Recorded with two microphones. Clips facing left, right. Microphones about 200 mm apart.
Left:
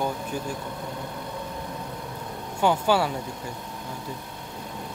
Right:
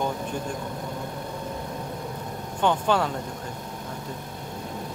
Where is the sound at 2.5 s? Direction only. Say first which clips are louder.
Left 1 dB; 10° left (ahead or behind).